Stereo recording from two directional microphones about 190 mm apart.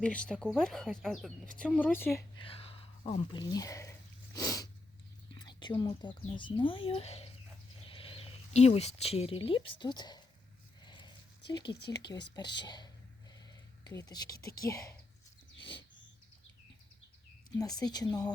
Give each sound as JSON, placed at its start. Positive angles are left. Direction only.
{"t": 0.0, "sound": "speech", "side_deg": 5}
{"t": 2.4, "sound": "speech", "side_deg": 30}
{"t": 4.4, "sound": "sneeze", "side_deg": 20}
{"t": 5.3, "sound": "speech", "side_deg": 25}
{"t": 10.8, "sound": "a sound", "side_deg": 25}
{"t": 12.1, "sound": "speech", "side_deg": 15}
{"t": 17.7, "sound": "speech", "side_deg": 20}